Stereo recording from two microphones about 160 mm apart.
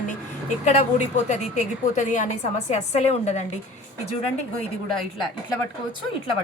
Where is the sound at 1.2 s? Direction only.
50° left (ahead or behind).